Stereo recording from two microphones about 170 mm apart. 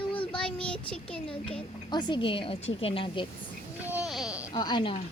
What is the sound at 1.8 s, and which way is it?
A woman's voice, 25° left (ahead or behind).